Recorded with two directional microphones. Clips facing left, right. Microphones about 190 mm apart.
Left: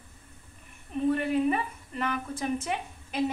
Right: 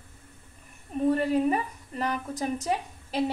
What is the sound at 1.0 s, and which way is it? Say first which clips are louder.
A woman's voice: right 2 dB; 35° right (ahead or behind).